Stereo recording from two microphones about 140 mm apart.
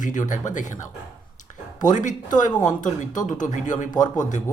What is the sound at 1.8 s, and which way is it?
Speech, 65° left (ahead or behind).